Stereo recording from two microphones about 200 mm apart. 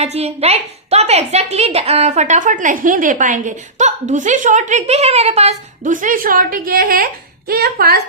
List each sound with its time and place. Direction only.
0.0 s a woman's voice: 30° right (ahead or behind); by 8.0 s 50° right (ahead or behind)